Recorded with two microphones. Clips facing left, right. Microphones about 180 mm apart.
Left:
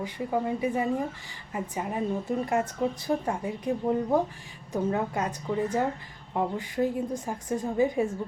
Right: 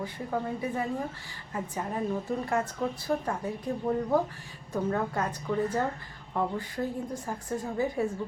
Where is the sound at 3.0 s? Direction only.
15° left (ahead or behind).